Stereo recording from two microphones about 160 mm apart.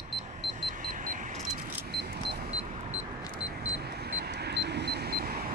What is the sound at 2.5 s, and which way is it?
Vehicle, 45° right (ahead or behind).